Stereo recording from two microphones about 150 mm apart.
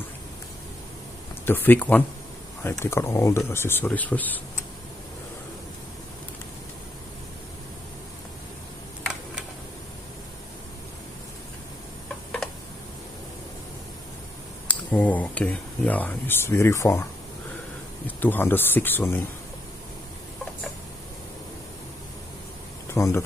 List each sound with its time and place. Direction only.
1.4 s speech: 15° left (ahead or behind)
14.7 s speech: 10° left (ahead or behind)
18.0 s speech: 10° left (ahead or behind)
22.8 s speech: 20° left (ahead or behind)